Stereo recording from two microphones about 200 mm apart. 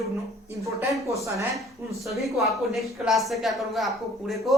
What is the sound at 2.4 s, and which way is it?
A woman's voice, centre (ahead or behind).